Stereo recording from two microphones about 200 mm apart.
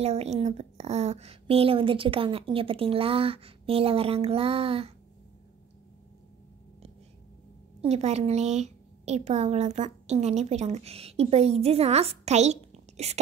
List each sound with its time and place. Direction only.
0.0 s a woman's voice: 30° right (ahead or behind)
7.8 s a woman's voice: 30° right (ahead or behind)